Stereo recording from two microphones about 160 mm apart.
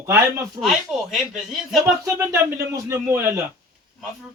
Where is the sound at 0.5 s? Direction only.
Centre (ahead or behind).